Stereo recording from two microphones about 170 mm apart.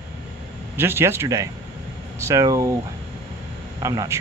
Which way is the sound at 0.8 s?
15° right (ahead or behind).